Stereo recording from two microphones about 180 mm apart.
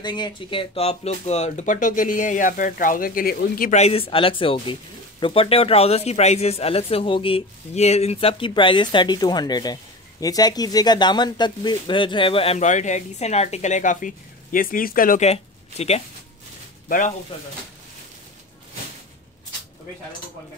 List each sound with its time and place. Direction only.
0.0 s speech: 25° left (ahead or behind); by 3.8 s 50° left (ahead or behind)
3.8 s speech: 30° left (ahead or behind)